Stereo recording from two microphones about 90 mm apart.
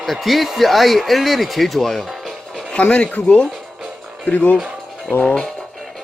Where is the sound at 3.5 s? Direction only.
Centre (ahead or behind).